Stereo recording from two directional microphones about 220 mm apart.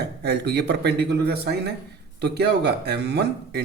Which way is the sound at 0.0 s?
50° right (ahead or behind).